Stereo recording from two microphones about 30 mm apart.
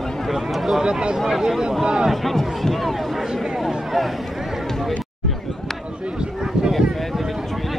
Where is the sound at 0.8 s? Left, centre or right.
Right.